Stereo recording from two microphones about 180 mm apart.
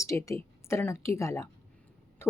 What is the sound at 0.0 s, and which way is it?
Speech, 15° left (ahead or behind).